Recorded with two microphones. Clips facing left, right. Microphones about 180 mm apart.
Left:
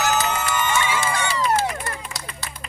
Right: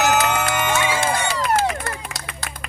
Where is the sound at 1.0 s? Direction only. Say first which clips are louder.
Right 2 dB; 60° right (ahead or behind).